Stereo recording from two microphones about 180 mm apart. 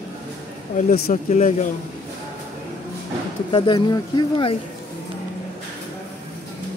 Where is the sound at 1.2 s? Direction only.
40° left (ahead or behind).